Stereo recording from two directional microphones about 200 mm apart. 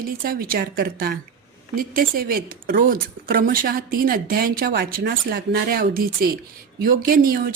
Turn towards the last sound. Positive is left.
turn(degrees=-50)  # may be behind; listen again after turning